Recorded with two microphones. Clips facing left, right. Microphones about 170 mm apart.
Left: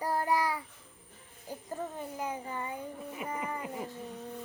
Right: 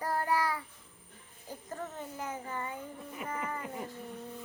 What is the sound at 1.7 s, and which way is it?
Speech, 15° left (ahead or behind).